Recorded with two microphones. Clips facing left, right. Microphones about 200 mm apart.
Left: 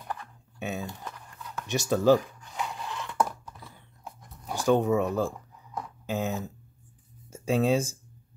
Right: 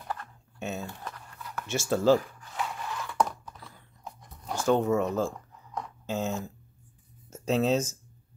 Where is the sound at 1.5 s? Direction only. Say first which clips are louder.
Left 1 dB; 15° left (ahead or behind).